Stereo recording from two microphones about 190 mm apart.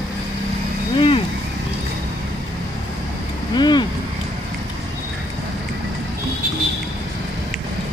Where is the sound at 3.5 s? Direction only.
25° left (ahead or behind).